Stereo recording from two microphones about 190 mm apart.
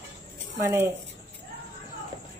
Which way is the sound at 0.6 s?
15° right (ahead or behind).